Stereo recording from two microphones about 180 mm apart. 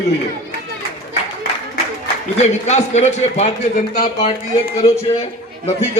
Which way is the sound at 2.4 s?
40° left (ahead or behind).